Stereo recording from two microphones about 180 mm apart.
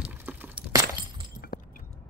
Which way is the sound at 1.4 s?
55° left (ahead or behind).